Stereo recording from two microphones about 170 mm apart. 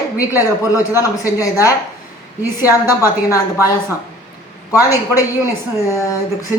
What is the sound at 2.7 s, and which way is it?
Speech, 20° left (ahead or behind).